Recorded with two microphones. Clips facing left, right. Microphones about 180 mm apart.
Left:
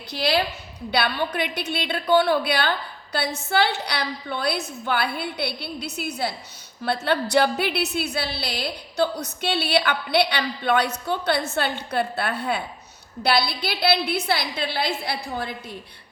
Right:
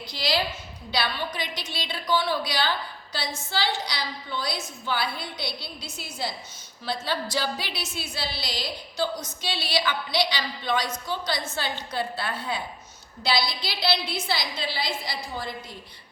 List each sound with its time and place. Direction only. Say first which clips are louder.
0.1 s a woman's voice: left 5 dB; 60° left (ahead or behind)